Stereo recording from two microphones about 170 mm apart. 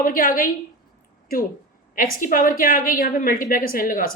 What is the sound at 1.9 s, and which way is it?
A woman's voice, 55° left (ahead or behind).